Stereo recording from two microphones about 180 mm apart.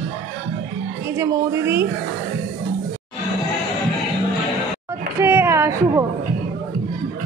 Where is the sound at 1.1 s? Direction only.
15° right (ahead or behind).